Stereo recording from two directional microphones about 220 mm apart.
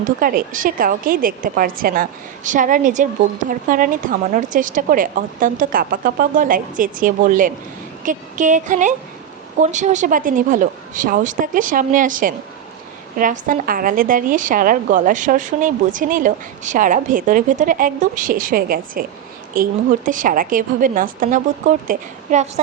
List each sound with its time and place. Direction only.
0.0 s a woman's voice: 40° right (ahead or behind)